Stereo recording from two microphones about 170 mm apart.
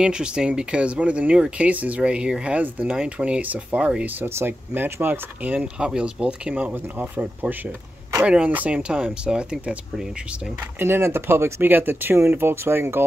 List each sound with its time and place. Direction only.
0.0 s speech: 5° right (ahead or behind)
10.9 s speech: 15° right (ahead or behind)